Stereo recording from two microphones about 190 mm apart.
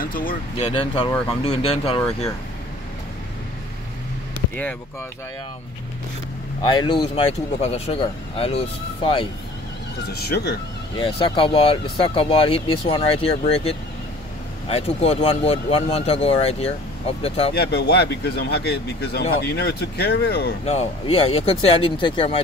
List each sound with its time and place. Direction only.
0.0 s a sound: 50° left (ahead or behind)
0.6 s speech: 30° left (ahead or behind)
6.6 s speech: 25° left (ahead or behind)
10.1 s speech: 55° left (ahead or behind)
11.0 s speech: 30° left (ahead or behind)
17.6 s speech: 55° left (ahead or behind)
20.6 s speech: 30° left (ahead or behind)